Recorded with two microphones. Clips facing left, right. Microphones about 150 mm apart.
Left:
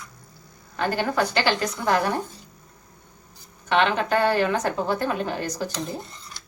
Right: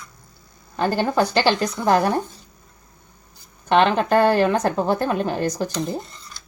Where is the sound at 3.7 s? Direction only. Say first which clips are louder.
Right 5 dB; 45° right (ahead or behind).